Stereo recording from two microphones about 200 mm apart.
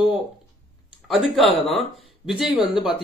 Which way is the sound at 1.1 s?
Centre (ahead or behind).